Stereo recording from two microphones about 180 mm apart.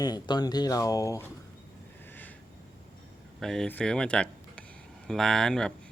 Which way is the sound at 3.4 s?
5° left (ahead or behind).